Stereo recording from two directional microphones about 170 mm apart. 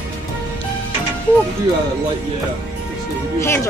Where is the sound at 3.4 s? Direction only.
15° left (ahead or behind).